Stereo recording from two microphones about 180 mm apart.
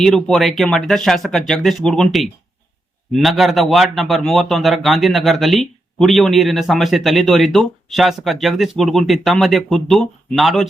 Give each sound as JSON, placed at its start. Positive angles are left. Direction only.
{"t": 0.0, "sound": "a man's voice", "side_deg": 0}